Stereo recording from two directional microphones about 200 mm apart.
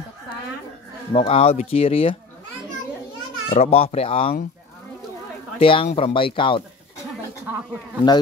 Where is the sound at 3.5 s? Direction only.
30° left (ahead or behind).